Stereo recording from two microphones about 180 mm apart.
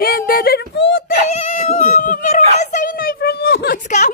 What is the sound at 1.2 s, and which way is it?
A woman's voice, 40° left (ahead or behind).